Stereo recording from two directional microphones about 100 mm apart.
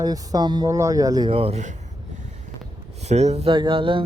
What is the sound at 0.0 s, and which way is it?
Speech, 40° right (ahead or behind).